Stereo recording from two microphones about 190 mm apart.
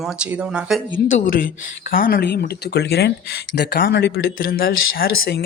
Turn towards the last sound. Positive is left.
turn(degrees=50)  # may be behind; listen again after turning